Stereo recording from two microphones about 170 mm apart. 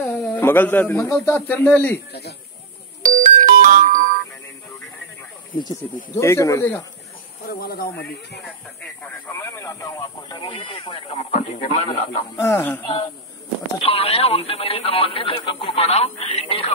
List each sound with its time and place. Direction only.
0.0 s a man's voice: 10° left (ahead or behind)
3.0 s music: 55° right (ahead or behind)
6.1 s speech: 15° left (ahead or behind)
7.4 s speech: 65° left (ahead or behind)
9.0 s speech: 15° left (ahead or behind); by 12.2 s 40° left (ahead or behind)
12.4 s speech: 15° left (ahead or behind)
13.7 s speech: 35° left (ahead or behind)